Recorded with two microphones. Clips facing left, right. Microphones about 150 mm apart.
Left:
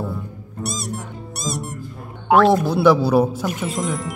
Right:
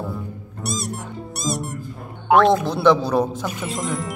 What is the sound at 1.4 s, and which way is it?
Music, centre (ahead or behind).